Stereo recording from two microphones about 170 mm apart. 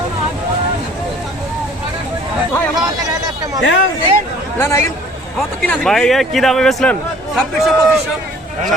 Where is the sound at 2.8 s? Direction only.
20° right (ahead or behind).